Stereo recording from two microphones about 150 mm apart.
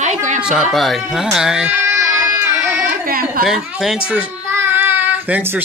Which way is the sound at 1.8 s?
20° right (ahead or behind).